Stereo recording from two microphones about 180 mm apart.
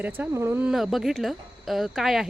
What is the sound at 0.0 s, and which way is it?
Speech, 10° right (ahead or behind).